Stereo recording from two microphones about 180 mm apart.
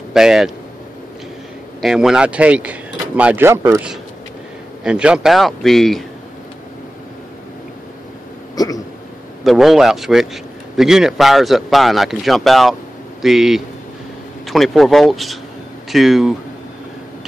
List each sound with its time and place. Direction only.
0.1 s speech: 5° right (ahead or behind)
1.8 s a man's voice: centre (ahead or behind)
8.5 s hiccup: 20° left (ahead or behind)
9.4 s a man's voice: centre (ahead or behind)